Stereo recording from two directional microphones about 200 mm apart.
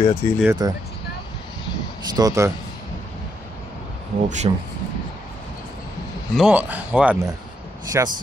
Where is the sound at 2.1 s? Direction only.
15° right (ahead or behind).